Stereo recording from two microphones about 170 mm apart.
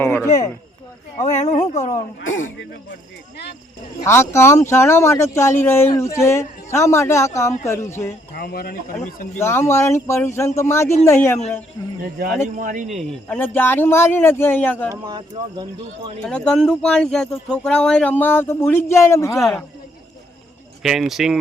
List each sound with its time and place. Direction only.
0.0 s speech: 15° left (ahead or behind)
1.2 s speech: 40° left (ahead or behind)
4.0 s speech: 15° left (ahead or behind)
8.4 s speech: 65° left (ahead or behind)
9.4 s speech: 15° left (ahead or behind)
12.5 s speech: 50° right (ahead or behind)
13.2 s speech: 10° left (ahead or behind)
15.1 s speech: 25° right (ahead or behind)
16.2 s speech: 5° left (ahead or behind)
20.8 s speech: centre (ahead or behind)